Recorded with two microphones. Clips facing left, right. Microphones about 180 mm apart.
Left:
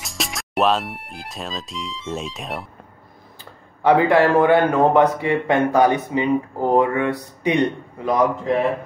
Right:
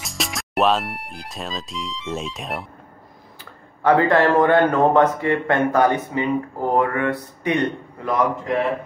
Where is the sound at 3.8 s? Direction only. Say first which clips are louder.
Left 1 dB; 15° left (ahead or behind).